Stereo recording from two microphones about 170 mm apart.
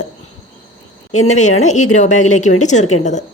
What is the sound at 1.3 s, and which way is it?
Speech, 45° left (ahead or behind).